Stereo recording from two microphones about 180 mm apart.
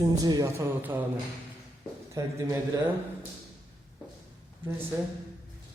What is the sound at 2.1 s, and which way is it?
Speech, 20° right (ahead or behind).